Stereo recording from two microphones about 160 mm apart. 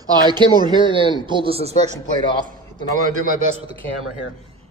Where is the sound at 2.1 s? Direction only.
30° left (ahead or behind).